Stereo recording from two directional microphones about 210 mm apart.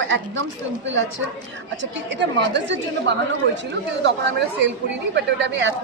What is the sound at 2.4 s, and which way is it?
Speech, 55° right (ahead or behind).